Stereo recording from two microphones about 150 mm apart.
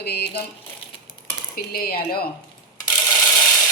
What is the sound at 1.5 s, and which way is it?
Speech, 90° left.